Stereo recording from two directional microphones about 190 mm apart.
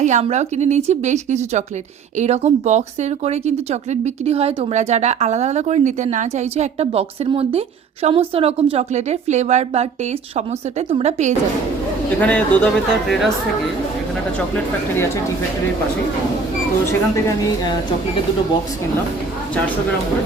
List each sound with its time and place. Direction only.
0.0 s speech: 35° right (ahead or behind)
12.2 s speech: 5° left (ahead or behind)
14.3 s speech: 10° left (ahead or behind)
16.8 s speech: 15° left (ahead or behind)